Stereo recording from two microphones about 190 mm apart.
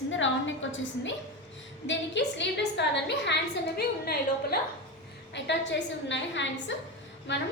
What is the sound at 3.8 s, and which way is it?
Speech, 55° left (ahead or behind).